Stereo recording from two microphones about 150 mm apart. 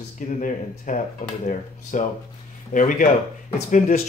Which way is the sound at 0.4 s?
55° left (ahead or behind).